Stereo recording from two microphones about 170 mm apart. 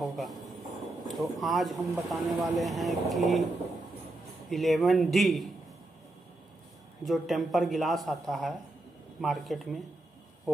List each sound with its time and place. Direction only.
0.0 s a sound: centre (ahead or behind)
1.0 s speech: centre (ahead or behind)
4.5 s speech: centre (ahead or behind)
7.1 s speech: centre (ahead or behind)